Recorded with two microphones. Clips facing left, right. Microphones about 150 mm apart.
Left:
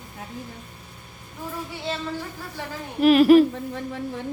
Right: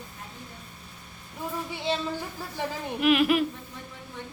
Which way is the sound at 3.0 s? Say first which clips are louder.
Left 9 dB; 40° left (ahead or behind).